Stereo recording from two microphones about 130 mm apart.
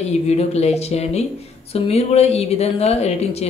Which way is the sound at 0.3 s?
55° left (ahead or behind).